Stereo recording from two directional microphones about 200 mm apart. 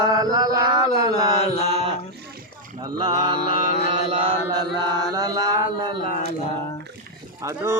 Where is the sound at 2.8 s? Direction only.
20° right (ahead or behind).